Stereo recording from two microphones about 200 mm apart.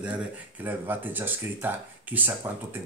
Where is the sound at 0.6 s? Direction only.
10° right (ahead or behind).